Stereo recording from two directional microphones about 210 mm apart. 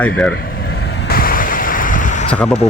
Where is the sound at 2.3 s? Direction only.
5° left (ahead or behind).